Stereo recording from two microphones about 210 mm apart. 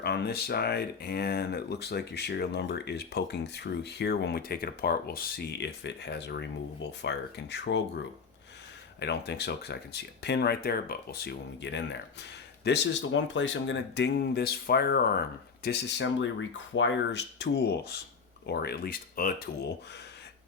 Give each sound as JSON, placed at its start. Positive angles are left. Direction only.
{"t": 0.0, "sound": "speech", "side_deg": 50}
{"t": 9.0, "sound": "speech", "side_deg": 55}